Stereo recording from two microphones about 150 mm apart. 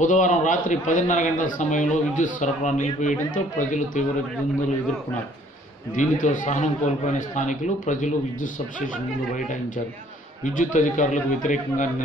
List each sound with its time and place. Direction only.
0.0 s a man's voice: 60° left (ahead or behind)
5.9 s a man's voice: 60° left (ahead or behind)
10.4 s a man's voice: 60° left (ahead or behind)